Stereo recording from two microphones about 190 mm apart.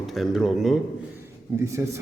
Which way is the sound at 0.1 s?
Centre (ahead or behind).